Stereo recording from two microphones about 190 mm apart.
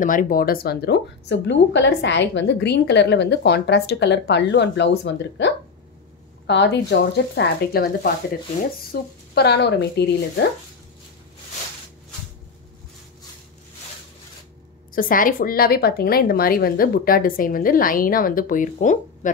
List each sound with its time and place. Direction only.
0.0 s speech: 45° left (ahead or behind); by 10.4 s 60° left (ahead or behind)
15.0 s a woman's voice: 45° left (ahead or behind)